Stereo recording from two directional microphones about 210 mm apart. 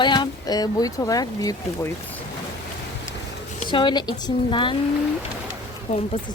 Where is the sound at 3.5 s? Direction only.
20° left (ahead or behind).